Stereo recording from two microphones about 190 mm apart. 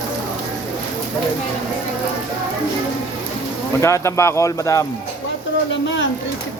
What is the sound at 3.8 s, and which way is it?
Speech, 15° left (ahead or behind).